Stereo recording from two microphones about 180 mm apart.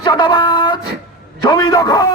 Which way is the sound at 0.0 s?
25° left (ahead or behind).